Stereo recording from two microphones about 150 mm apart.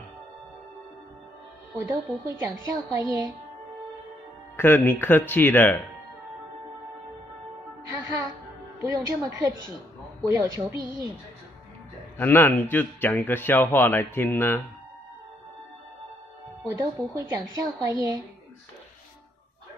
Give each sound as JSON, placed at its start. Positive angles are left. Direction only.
{"t": 1.9, "sound": "a woman's voice", "side_deg": -20}
{"t": 4.6, "sound": "a man's voice", "side_deg": 15}
{"t": 7.9, "sound": "music", "side_deg": -20}
{"t": 8.8, "sound": "a woman's voice", "side_deg": -20}
{"t": 12.2, "sound": "a man's voice", "side_deg": 15}
{"t": 16.6, "sound": "speech", "side_deg": -20}